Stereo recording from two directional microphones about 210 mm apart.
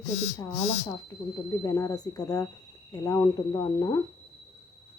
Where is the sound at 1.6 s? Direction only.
15° left (ahead or behind).